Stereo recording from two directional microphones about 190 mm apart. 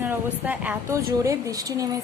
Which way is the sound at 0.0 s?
10° right (ahead or behind).